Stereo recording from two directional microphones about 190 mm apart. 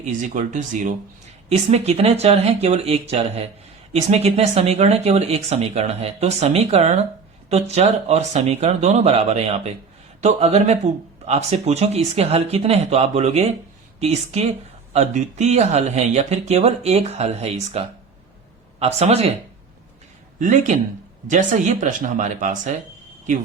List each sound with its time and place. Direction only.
0.0 s speech: 40° right (ahead or behind)
20.4 s speech: 40° right (ahead or behind)